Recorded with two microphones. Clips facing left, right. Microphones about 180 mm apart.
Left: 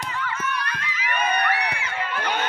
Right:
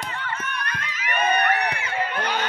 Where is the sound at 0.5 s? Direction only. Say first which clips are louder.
Left 2 dB; 50° right (ahead or behind).